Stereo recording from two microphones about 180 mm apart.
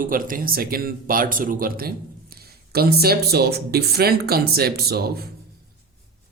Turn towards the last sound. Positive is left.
turn(degrees=-60)  # may be behind; listen again after turning